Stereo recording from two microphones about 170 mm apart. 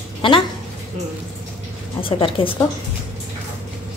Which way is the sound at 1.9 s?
30° left (ahead or behind).